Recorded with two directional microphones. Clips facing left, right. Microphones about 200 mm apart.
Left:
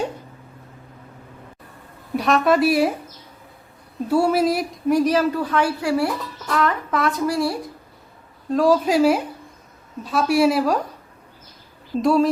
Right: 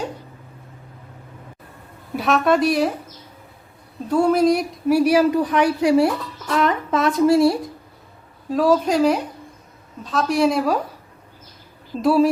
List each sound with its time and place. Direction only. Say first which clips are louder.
2.1 s speech: even; centre (ahead or behind)
4.1 s speech: right 2 dB; 5° left (ahead or behind); by 7.6 s 20° right (ahead or behind)
8.4 s a woman's voice: even; centre (ahead or behind)
12.0 s speech: right 2 dB; 5° right (ahead or behind)